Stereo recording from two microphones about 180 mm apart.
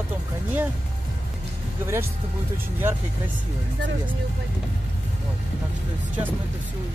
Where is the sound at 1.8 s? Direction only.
15° right (ahead or behind).